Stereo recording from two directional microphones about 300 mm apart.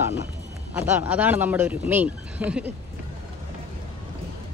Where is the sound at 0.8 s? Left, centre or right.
Centre.